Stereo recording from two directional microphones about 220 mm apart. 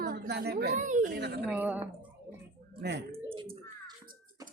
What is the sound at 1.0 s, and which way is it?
Speech, 50° right (ahead or behind).